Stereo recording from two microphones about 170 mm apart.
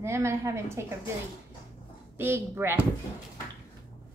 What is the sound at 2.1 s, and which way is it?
Speech, 15° right (ahead or behind).